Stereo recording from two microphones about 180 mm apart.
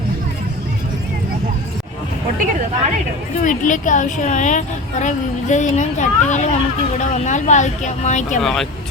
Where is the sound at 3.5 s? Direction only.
45° left (ahead or behind).